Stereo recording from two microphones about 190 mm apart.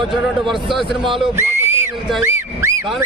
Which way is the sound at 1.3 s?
10° right (ahead or behind).